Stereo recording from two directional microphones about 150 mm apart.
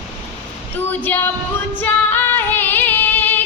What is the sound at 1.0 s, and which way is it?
Female singing, 15° left (ahead or behind).